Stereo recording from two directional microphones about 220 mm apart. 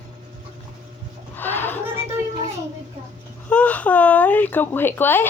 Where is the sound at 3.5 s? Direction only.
5° left (ahead or behind).